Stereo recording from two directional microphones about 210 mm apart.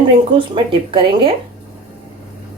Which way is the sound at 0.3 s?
25° right (ahead or behind).